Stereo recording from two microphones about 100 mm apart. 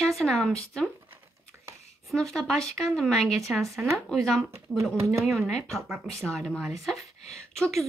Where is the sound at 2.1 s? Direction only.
5° left (ahead or behind).